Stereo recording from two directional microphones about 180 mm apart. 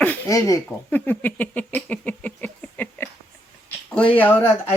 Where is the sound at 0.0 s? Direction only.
10° left (ahead or behind).